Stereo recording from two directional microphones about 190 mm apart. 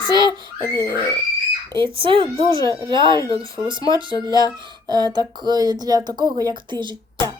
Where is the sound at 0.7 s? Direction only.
20° right (ahead or behind).